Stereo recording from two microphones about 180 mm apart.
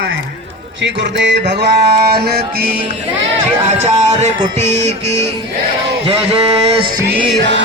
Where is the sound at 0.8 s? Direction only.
80° right.